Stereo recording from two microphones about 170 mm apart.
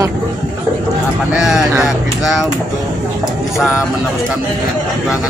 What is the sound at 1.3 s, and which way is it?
Speech, 5° right (ahead or behind).